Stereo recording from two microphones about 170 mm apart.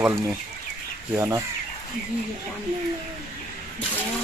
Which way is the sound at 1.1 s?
15° right (ahead or behind).